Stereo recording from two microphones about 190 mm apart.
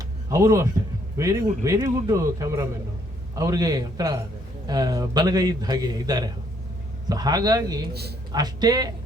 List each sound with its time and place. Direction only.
0.3 s a man's voice: 15° right (ahead or behind)